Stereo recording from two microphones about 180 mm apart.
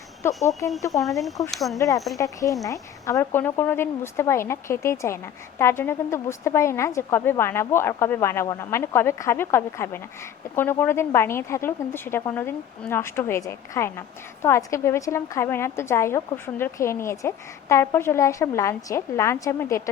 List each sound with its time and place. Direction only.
0.2 s a woman's voice: 15° left (ahead or behind)
1.0 s speech: centre (ahead or behind)
2.1 s a woman's voice: 20° left (ahead or behind)